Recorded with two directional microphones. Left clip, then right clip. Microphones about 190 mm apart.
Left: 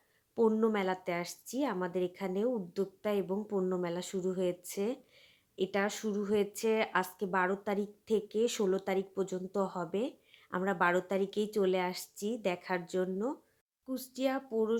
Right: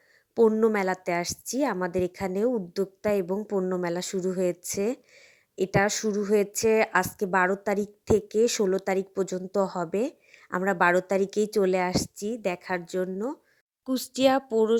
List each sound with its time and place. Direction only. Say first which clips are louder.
0.3 s a woman's voice: right 8 dB; 30° right (ahead or behind)
13.8 s speech: right 11 dB; 45° right (ahead or behind)